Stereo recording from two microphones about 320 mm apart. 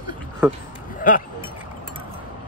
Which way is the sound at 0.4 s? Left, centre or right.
Centre.